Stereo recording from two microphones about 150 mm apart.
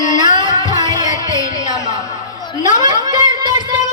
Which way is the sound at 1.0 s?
55° left (ahead or behind).